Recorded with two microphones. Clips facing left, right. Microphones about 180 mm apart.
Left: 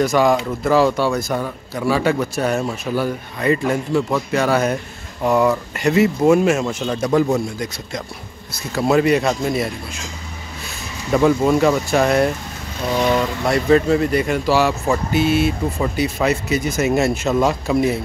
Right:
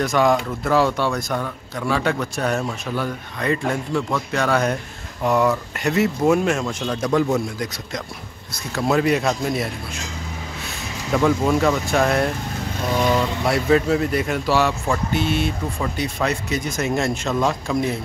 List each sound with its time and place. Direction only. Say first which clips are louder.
0.0 s speech: left 2 dB; centre (ahead or behind)
11.1 s speech: left 3 dB; 5° left (ahead or behind)